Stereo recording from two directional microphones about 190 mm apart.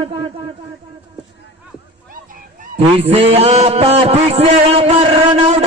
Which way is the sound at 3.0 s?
35° right (ahead or behind).